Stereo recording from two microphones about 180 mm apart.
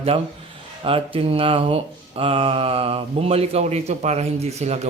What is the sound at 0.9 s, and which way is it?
Speech, 30° right (ahead or behind).